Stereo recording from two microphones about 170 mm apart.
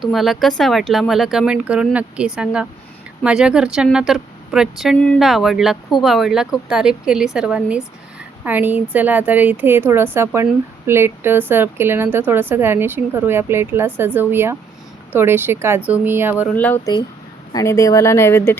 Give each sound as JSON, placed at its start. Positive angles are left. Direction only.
{"t": 0.0, "sound": "a woman's voice", "side_deg": 0}
{"t": 16.6, "sound": "speech", "side_deg": 10}